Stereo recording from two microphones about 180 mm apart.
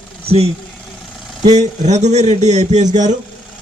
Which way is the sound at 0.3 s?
35° right (ahead or behind).